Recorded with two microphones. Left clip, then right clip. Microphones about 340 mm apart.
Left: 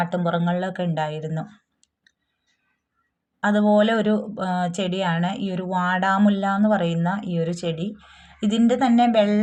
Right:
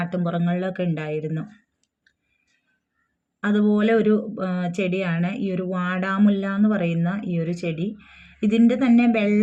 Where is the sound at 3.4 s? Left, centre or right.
Centre.